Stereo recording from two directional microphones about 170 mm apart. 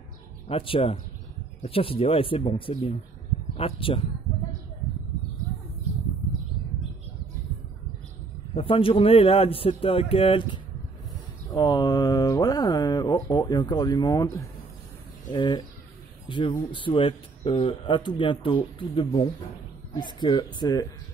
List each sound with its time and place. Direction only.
0.5 s speech: 35° left (ahead or behind)
8.5 s speech: 30° left (ahead or behind)
15.3 s speech: 25° left (ahead or behind)